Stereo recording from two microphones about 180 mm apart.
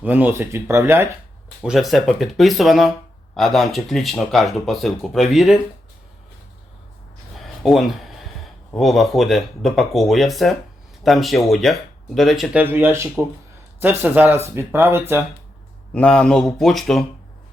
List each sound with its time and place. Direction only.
0.0 s speech: 10° right (ahead or behind)
1.6 s speech: centre (ahead or behind)
7.3 s a sound: centre (ahead or behind)
8.7 s speech: centre (ahead or behind)
12.6 s speech: 10° right (ahead or behind)
15.9 s speech: 5° left (ahead or behind)